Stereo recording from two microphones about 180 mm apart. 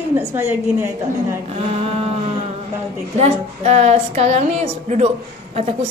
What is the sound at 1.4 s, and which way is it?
Speech, 35° right (ahead or behind).